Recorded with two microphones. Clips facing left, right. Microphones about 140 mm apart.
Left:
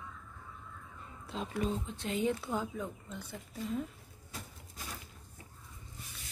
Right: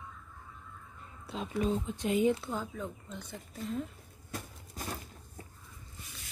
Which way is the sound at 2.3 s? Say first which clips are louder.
Left 1 dB; 15° left (ahead or behind).